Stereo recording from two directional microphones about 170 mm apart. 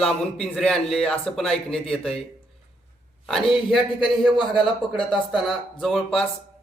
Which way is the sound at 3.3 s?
Centre (ahead or behind).